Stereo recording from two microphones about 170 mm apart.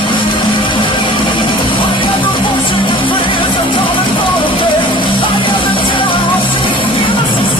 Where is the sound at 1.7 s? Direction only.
30° left (ahead or behind).